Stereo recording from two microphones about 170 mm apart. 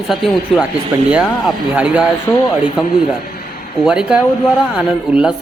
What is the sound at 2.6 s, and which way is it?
Speech, 5° right (ahead or behind).